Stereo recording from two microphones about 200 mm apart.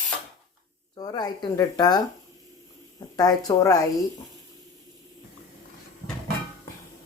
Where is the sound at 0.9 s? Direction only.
20° left (ahead or behind).